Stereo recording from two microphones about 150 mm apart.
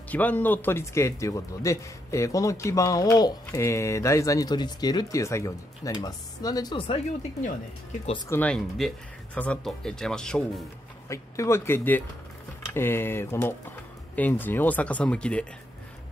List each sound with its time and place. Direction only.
0.1 s speech: 10° left (ahead or behind); by 7.0 s 35° left (ahead or behind)
8.3 s speech: 10° left (ahead or behind)
11.1 s speech: 20° left (ahead or behind)